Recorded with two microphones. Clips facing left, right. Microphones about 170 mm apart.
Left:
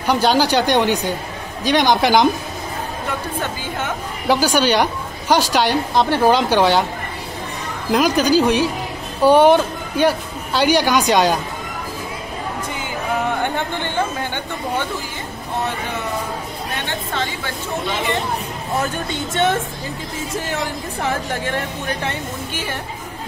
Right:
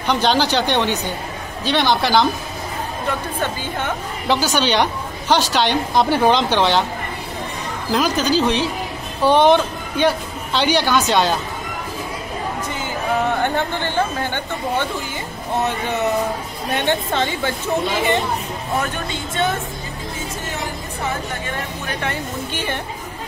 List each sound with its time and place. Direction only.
0.0 s speech: 10° left (ahead or behind)
3.8 s speech: 10° left (ahead or behind)
5.9 s speech: centre (ahead or behind)
6.3 s speech: 10° left (ahead or behind)
7.9 s speech: 10° left (ahead or behind)
16.7 s a woman's voice: 20° right (ahead or behind)
22.5 s speech: 10° left (ahead or behind)